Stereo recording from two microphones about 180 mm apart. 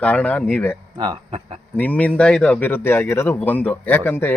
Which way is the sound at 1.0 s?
25° right (ahead or behind).